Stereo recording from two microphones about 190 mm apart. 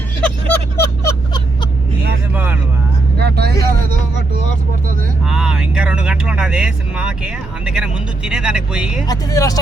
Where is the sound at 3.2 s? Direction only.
60° right (ahead or behind).